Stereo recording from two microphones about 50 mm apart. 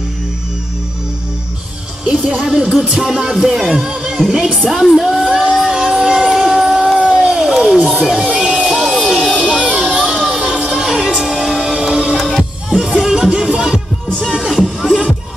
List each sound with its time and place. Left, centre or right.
2.3 s speech: centre
5.3 s a sound: centre
5.7 s music: centre
7.0 s a sound: centre
8.8 s a sound: centre
9.4 s music: centre
12.2 s music: centre
12.6 s music: centre
14.5 s music: centre